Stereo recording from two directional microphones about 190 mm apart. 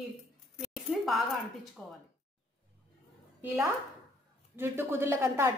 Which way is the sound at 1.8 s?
5° left (ahead or behind).